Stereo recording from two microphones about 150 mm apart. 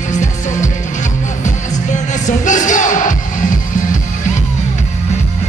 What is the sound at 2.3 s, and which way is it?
Music, 55° left (ahead or behind).